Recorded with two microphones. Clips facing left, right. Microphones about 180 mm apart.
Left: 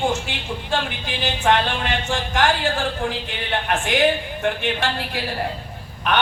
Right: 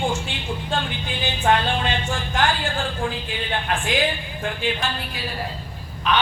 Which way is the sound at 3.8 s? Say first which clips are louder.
Left 4 dB; 70° left (ahead or behind).